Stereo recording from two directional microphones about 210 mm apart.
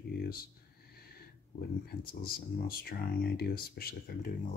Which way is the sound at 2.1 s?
45° left (ahead or behind).